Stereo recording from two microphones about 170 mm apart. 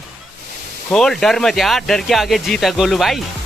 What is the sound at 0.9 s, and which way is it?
Speech, 5° left (ahead or behind).